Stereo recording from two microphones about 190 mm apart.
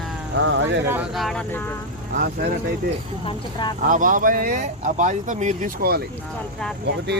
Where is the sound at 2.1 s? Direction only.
55° right (ahead or behind).